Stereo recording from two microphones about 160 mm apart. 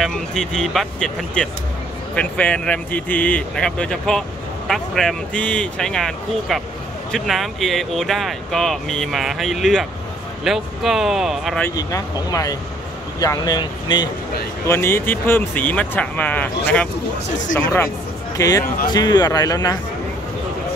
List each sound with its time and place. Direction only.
0.0 s speech: 5° left (ahead or behind)
11.7 s speech: 20° left (ahead or behind)
14.7 s speech: 15° left (ahead or behind)
17.6 s speech: 15° left (ahead or behind)